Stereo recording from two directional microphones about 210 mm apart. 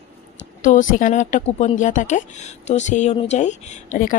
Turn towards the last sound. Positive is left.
turn(degrees=35)  # may be behind; listen again after turning